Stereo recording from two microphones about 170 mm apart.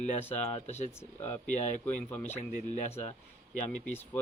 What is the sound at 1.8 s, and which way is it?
Speech, 10° left (ahead or behind).